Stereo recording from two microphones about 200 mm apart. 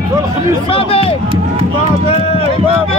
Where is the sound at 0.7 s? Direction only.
30° left (ahead or behind).